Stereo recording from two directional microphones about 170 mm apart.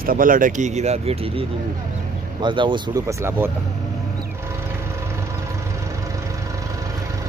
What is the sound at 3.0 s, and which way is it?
Speech, 15° right (ahead or behind).